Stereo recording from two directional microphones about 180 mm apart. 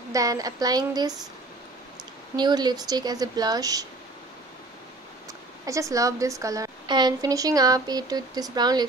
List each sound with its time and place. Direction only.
0.1 s a woman's voice: 20° right (ahead or behind)
2.3 s a woman's voice: 25° right (ahead or behind)
5.7 s a woman's voice: 15° right (ahead or behind)